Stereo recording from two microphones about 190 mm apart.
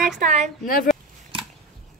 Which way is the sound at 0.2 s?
40° right (ahead or behind).